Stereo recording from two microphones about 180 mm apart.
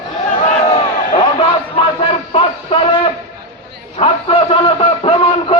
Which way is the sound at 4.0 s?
30° left (ahead or behind).